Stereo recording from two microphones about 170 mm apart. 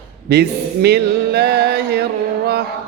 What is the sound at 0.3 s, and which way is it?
Music, 75° right (ahead or behind).